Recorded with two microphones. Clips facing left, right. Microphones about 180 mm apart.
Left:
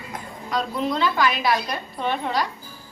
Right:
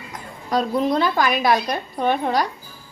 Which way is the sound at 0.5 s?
40° right (ahead or behind).